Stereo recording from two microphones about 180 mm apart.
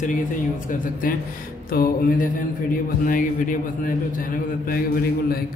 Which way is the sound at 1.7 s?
55° left (ahead or behind).